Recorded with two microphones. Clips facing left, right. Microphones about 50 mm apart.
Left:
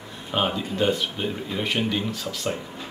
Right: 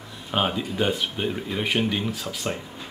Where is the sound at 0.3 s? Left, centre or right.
Centre.